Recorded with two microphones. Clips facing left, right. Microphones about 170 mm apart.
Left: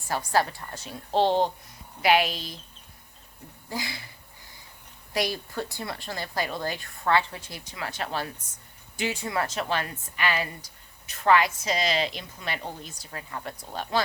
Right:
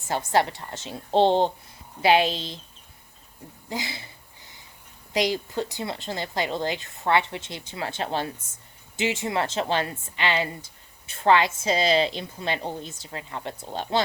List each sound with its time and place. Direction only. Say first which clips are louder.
0.1 s a woman's voice: right 2 dB; 25° right (ahead or behind)
3.7 s a woman's voice: right 2 dB; 20° right (ahead or behind)
5.1 s a woman's voice: right 4 dB; 20° right (ahead or behind)